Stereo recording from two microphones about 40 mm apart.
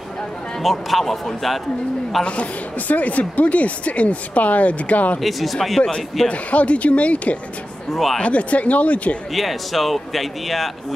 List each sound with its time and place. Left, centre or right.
0.6 s a man's voice: centre
2.9 s speech: left
5.2 s a man's voice: centre
5.8 s a man's voice: left
6.2 s speech: left
7.9 s a man's voice: centre
8.2 s speech: left
9.3 s a man's voice: centre